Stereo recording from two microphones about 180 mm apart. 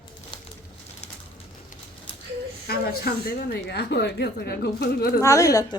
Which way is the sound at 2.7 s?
60° left (ahead or behind).